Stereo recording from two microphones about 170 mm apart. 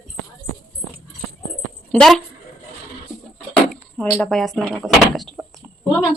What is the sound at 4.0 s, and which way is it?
Speech, 5° left (ahead or behind).